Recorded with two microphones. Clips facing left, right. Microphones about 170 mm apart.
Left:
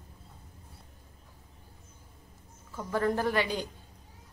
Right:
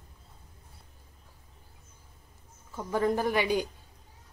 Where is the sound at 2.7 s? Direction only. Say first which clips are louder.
Right 1 dB; 15° right (ahead or behind).